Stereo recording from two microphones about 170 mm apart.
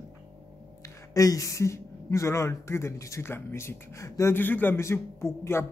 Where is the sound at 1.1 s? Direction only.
20° left (ahead or behind).